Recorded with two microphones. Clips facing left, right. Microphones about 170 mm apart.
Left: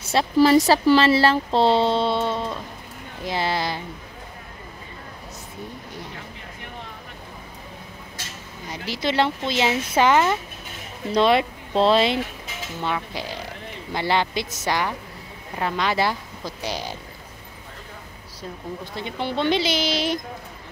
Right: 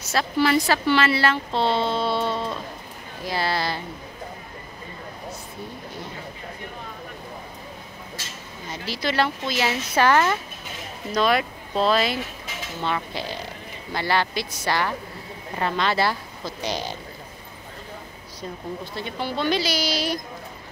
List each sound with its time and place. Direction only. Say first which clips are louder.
0.1 s speech: left 5 dB; 30° left (ahead or behind)
8.6 s speech: left 2 dB; 15° left (ahead or behind)
12.8 s speech: even; 10° left (ahead or behind)
18.9 s speech: left 3 dB; 20° left (ahead or behind)